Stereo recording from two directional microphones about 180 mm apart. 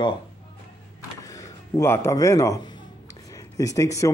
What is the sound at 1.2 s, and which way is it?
A man's voice, 20° left (ahead or behind).